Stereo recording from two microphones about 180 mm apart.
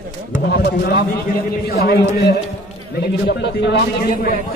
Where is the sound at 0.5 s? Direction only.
60° left (ahead or behind).